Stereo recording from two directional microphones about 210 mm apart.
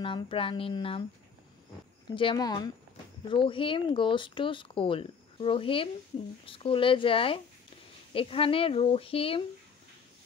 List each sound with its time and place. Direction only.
0.0 s speech: 25° left (ahead or behind)
2.1 s speech: 20° left (ahead or behind)